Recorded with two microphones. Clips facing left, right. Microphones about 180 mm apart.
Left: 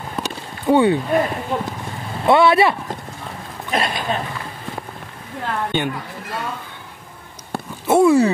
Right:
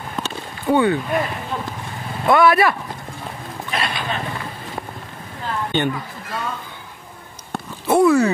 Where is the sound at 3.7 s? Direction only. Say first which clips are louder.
Left 4 dB; 45° left (ahead or behind).